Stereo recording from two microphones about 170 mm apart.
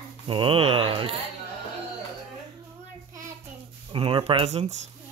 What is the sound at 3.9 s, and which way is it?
Speech, 35° right (ahead or behind).